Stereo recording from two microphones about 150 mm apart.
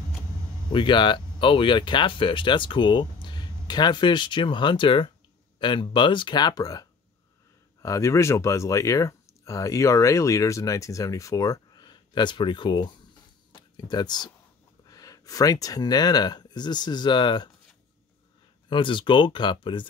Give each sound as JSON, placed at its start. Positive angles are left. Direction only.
{"t": 0.7, "sound": "speech", "side_deg": 35}
{"t": 18.7, "sound": "speech", "side_deg": 35}